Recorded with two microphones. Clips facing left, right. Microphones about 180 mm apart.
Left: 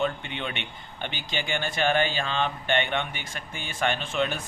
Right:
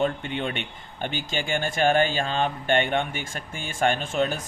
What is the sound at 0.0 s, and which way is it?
Speech, 45° right (ahead or behind).